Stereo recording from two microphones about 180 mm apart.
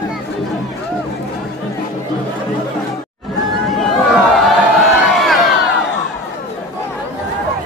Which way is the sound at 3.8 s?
Centre (ahead or behind).